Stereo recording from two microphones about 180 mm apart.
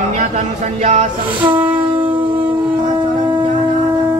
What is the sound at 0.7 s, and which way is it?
Music, 40° right (ahead or behind).